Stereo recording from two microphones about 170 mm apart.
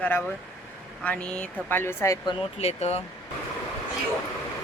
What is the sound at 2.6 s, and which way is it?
Speech, 40° left (ahead or behind).